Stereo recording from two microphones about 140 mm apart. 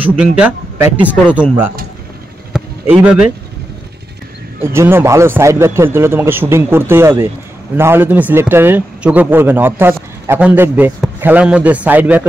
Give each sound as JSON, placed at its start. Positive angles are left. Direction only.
{"t": 0.2, "sound": "a man's voice", "side_deg": -10}
{"t": 2.5, "sound": "a sound", "side_deg": -10}
{"t": 4.6, "sound": "a man's voice", "side_deg": -20}